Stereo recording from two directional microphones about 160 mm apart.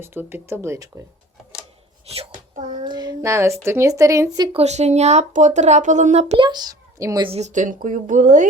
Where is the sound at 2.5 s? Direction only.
55° right (ahead or behind).